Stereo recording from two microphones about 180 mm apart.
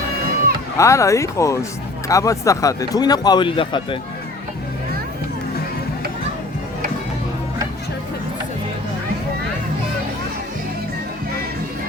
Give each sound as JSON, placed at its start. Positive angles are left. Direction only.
{"t": 0.8, "sound": "speech", "side_deg": 15}